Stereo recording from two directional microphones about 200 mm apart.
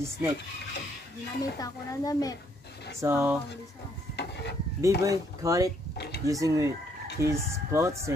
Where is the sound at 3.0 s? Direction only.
15° right (ahead or behind).